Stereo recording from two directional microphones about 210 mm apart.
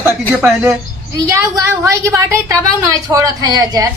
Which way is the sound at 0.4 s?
10° right (ahead or behind).